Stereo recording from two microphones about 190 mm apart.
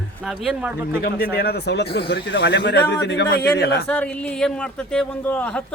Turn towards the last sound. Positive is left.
turn(degrees=5)  # may be behind; listen again after turning